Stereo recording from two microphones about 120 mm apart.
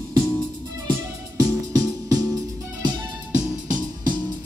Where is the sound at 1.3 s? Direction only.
30° right (ahead or behind).